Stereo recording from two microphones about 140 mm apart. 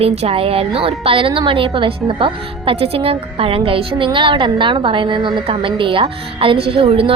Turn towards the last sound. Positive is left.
turn(degrees=-40)  # may be behind; listen again after turning